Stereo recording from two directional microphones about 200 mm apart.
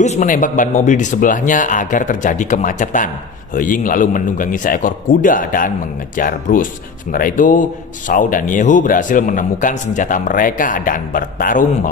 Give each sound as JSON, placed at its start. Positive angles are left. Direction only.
{"t": 0.0, "sound": "a man's voice", "side_deg": 40}